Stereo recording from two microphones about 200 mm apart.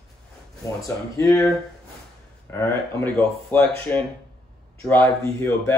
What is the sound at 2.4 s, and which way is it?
A man's voice, 15° left (ahead or behind).